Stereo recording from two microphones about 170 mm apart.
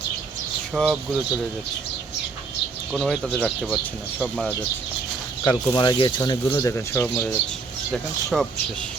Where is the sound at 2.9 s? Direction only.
5° left (ahead or behind).